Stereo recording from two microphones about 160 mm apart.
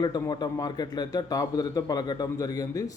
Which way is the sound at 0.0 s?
25° left (ahead or behind).